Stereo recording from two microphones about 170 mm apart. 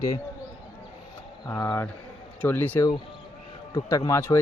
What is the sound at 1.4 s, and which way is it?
A man's voice, 15° left (ahead or behind).